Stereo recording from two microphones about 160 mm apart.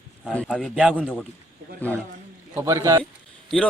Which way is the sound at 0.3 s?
Centre (ahead or behind).